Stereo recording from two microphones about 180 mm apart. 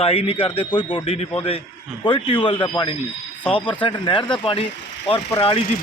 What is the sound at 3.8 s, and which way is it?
Speech, 25° left (ahead or behind).